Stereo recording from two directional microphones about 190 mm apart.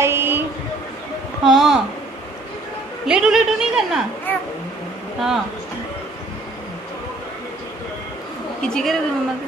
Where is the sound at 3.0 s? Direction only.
5° right (ahead or behind).